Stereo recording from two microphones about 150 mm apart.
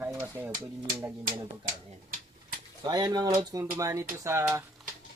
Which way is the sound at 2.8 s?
25° right (ahead or behind).